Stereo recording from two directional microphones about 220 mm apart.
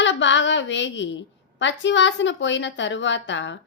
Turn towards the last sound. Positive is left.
turn(degrees=55)  # may be behind; listen again after turning